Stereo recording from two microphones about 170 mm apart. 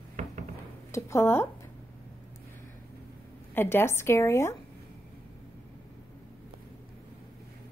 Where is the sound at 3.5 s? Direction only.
15° left (ahead or behind).